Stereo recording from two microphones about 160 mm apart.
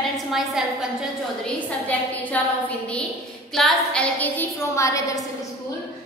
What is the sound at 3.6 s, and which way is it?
A woman's voice, 5° left (ahead or behind).